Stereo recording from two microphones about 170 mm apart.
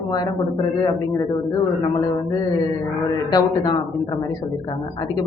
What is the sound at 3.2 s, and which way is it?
A man's voice, 25° left (ahead or behind).